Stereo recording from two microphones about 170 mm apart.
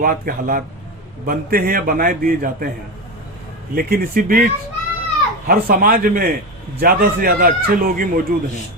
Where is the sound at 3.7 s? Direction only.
60° right (ahead or behind).